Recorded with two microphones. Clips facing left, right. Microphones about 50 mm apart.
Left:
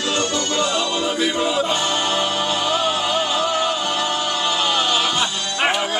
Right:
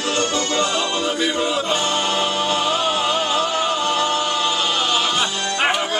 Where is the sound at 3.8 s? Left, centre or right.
Centre.